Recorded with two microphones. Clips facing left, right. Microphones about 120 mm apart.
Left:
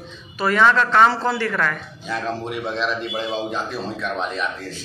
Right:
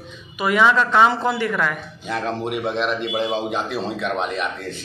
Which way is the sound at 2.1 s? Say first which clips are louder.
Right 2 dB; 60° right (ahead or behind).